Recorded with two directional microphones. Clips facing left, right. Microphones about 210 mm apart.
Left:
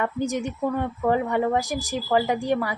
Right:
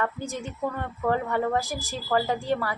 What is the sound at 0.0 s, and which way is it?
A woman's voice, 15° left (ahead or behind).